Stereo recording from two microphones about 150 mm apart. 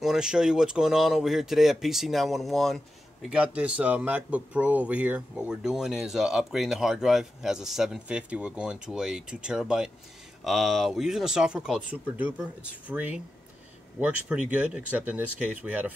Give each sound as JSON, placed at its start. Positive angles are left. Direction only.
{"t": 0.0, "sound": "speech", "side_deg": -5}